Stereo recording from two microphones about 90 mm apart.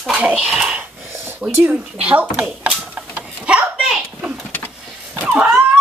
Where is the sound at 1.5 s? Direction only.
20° right (ahead or behind).